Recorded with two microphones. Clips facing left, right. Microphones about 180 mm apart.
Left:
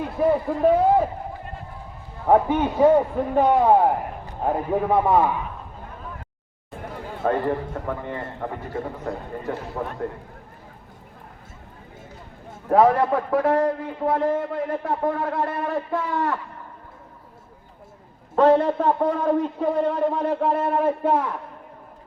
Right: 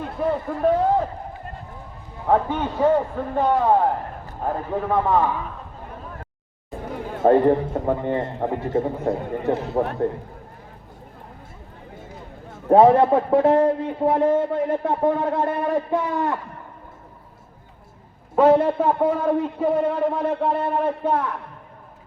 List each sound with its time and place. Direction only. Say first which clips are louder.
0.2 s a man's voice: left 3 dB; 10° left (ahead or behind)
2.2 s a man's voice: left 2 dB; 15° left (ahead or behind)
7.2 s a man's voice: right 7 dB; 30° right (ahead or behind)
12.6 s a man's voice: right 4 dB; 25° right (ahead or behind)
18.3 s a man's voice: right 1 dB; 10° right (ahead or behind); by 21.2 s 5° left (ahead or behind)